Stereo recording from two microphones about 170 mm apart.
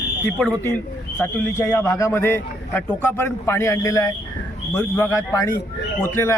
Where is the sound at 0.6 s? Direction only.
10° left (ahead or behind).